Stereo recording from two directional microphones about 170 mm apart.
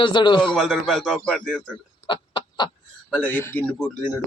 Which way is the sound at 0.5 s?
Centre (ahead or behind).